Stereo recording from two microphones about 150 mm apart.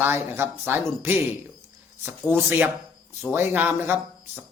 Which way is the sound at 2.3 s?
10° right (ahead or behind).